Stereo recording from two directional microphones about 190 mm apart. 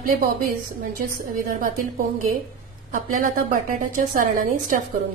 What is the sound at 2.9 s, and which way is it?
A woman's voice, 45° right (ahead or behind).